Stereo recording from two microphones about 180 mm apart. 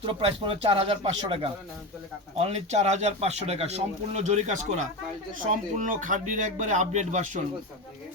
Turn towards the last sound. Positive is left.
turn(degrees=-40)  # may be behind; listen again after turning